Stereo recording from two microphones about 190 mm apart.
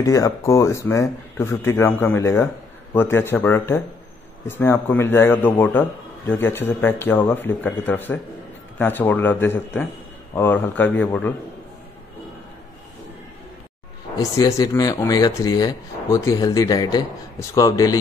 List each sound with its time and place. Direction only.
0.0 s a man's voice: 15° left (ahead or behind)
14.1 s speech: 20° left (ahead or behind)